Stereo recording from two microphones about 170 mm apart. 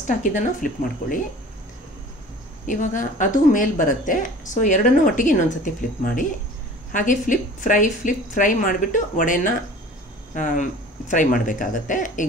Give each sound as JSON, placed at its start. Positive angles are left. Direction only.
{"t": 0.0, "sound": "speech", "side_deg": 50}
{"t": 2.6, "sound": "speech", "side_deg": 50}